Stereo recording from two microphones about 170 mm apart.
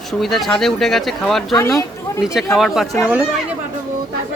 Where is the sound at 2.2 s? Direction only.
Centre (ahead or behind).